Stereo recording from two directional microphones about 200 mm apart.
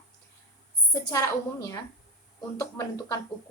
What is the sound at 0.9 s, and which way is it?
Speech, 15° left (ahead or behind).